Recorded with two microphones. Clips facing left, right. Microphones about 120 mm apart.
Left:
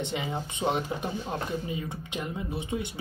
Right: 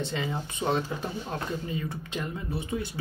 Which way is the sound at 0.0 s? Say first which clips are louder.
Even; 20° left (ahead or behind).